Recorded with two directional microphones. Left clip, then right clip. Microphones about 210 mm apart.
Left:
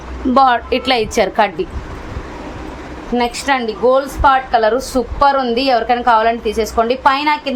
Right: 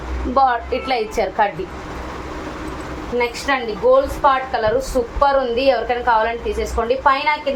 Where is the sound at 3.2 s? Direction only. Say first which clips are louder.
Left 3 dB; 55° left (ahead or behind).